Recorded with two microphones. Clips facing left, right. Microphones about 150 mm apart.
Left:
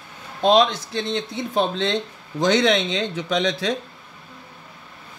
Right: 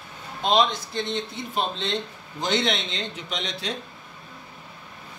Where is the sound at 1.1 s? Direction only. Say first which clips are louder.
Left 6 dB; 90° left.